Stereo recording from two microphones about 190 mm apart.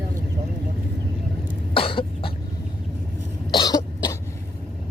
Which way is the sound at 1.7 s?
30° left (ahead or behind).